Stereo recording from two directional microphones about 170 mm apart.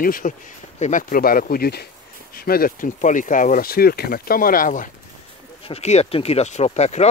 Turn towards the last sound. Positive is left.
turn(degrees=40)  # may be behind; listen again after turning